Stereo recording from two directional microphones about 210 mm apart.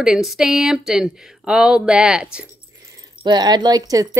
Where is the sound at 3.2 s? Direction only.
20° right (ahead or behind).